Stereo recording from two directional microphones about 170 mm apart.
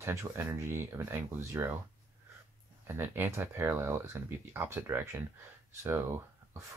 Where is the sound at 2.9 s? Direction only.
15° right (ahead or behind).